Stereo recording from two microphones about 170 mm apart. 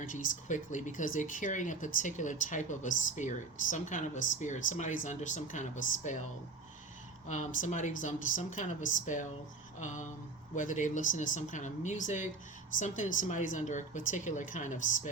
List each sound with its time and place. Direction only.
0.0 s speech: 50° left (ahead or behind)
7.3 s speech: 45° left (ahead or behind)